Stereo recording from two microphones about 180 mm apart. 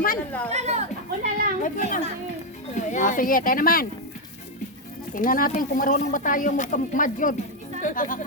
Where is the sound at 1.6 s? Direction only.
50° left (ahead or behind).